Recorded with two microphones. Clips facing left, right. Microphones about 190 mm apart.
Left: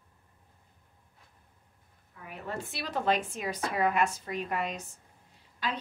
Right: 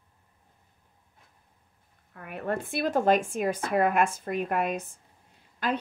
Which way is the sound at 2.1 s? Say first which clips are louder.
Right 7 dB; 60° right (ahead or behind).